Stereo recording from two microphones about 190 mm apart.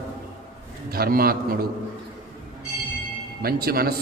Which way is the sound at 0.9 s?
50° right (ahead or behind).